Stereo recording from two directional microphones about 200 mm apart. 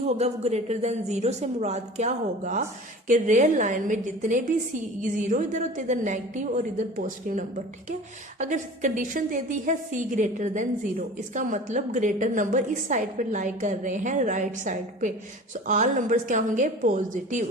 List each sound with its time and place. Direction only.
0.2 s a woman's voice: 35° right (ahead or behind)